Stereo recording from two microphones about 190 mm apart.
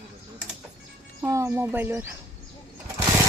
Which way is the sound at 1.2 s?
15° right (ahead or behind).